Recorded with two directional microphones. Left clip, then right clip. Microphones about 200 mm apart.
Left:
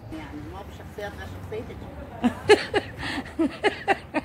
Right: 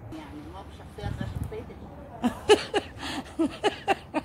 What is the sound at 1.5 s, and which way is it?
Vehicle, 50° left (ahead or behind).